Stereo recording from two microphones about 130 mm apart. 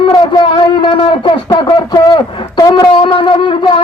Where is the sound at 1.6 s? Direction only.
30° left (ahead or behind).